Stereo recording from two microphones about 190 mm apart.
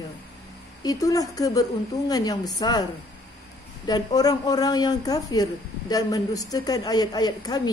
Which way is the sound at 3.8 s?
20° left (ahead or behind).